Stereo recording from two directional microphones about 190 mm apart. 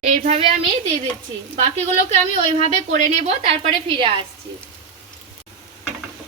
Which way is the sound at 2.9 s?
35° right (ahead or behind).